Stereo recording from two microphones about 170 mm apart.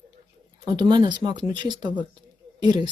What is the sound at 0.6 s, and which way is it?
Speech, 25° right (ahead or behind).